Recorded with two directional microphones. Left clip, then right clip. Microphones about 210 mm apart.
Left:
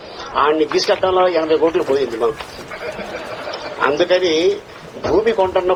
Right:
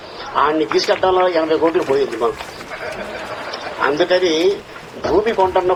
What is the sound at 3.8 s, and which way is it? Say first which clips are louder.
Speech: even; 40° left (ahead or behind).